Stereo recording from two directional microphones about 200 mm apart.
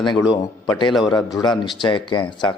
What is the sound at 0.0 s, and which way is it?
Speech, 20° left (ahead or behind).